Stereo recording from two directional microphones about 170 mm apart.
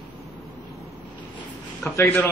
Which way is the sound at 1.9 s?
15° left (ahead or behind).